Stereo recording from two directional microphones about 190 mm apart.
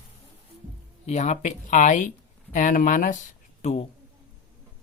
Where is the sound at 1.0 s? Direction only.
35° left (ahead or behind).